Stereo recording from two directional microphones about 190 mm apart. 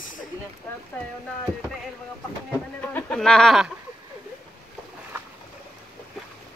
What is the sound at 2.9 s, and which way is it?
Speech, 10° left (ahead or behind).